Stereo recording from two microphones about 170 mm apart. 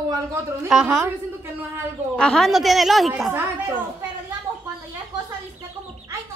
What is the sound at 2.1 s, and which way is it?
A woman's voice, 5° left (ahead or behind).